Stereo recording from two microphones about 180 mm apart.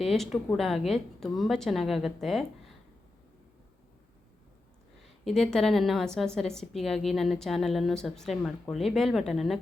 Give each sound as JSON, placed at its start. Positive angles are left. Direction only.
{"t": 0.1, "sound": "a woman's voice", "side_deg": 0}
{"t": 5.2, "sound": "a woman's voice", "side_deg": 5}